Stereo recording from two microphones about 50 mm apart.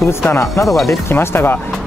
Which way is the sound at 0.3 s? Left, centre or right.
Left.